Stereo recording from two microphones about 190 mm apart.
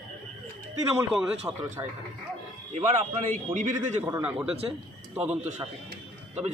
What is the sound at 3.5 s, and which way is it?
Speech, 40° right (ahead or behind).